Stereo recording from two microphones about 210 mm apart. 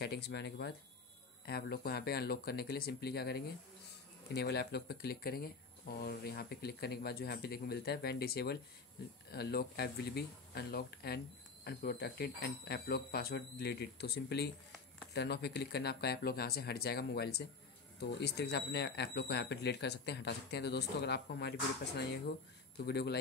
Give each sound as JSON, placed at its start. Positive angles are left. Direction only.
{"t": 0.0, "sound": "speech", "side_deg": 50}